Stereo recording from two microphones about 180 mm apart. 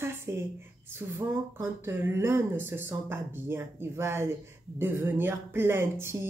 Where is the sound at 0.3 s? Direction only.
15° right (ahead or behind).